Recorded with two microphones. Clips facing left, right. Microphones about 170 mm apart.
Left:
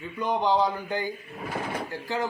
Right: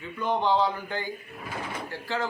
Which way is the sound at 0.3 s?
15° left (ahead or behind).